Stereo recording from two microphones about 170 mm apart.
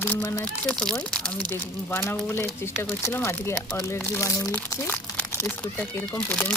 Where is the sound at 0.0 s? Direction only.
10° left (ahead or behind).